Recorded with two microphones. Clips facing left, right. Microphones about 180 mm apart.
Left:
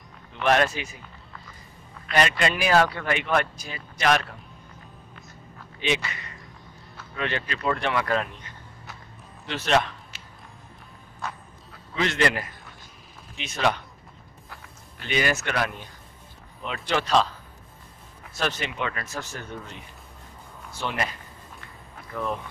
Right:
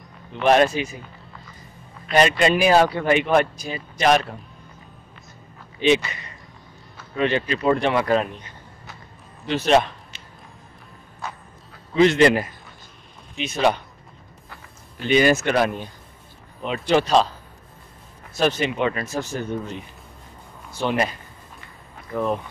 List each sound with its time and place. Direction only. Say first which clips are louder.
0.4 s speech: right 5 dB; 20° right (ahead or behind)
2.0 s speech: right 6 dB; 20° right (ahead or behind)
6.0 s a sound: right 1 dB; 25° right (ahead or behind)
7.2 s speech: right 8 dB; 20° right (ahead or behind)
9.5 s speech: right 5 dB; 20° right (ahead or behind)
11.2 s a sound: right 1 dB; centre (ahead or behind)
11.9 s speech: right 9 dB; 25° right (ahead or behind)
15.0 s speech: right 8 dB; 25° right (ahead or behind)
18.4 s speech: right 8 dB; 25° right (ahead or behind)
20.8 s speech: right 7 dB; 25° right (ahead or behind)
22.1 s speech: right 6 dB; 35° right (ahead or behind)